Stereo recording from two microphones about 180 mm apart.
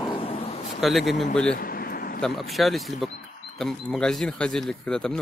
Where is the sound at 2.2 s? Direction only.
Centre (ahead or behind).